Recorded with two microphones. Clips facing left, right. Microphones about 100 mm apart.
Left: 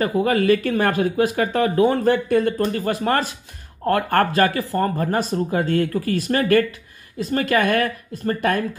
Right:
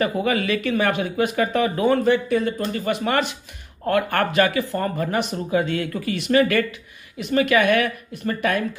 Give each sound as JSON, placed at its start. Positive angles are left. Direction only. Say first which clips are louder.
{"t": 0.0, "sound": "speech", "louder": "left 3 dB", "side_deg": 30}
{"t": 2.2, "sound": "speech", "louder": "left 3 dB", "side_deg": 50}